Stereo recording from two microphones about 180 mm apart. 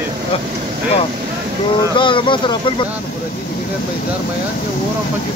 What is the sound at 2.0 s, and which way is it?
Speech, 25° left (ahead or behind).